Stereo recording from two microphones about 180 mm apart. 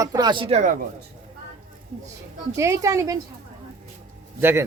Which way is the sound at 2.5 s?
15° right (ahead or behind).